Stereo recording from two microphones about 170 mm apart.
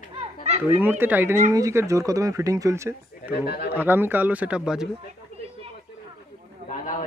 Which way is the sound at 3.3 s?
70° left (ahead or behind).